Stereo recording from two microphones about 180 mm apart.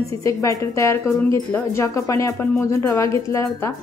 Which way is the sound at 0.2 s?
20° left (ahead or behind).